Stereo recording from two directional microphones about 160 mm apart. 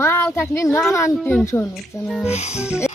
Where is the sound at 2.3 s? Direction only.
40° left (ahead or behind).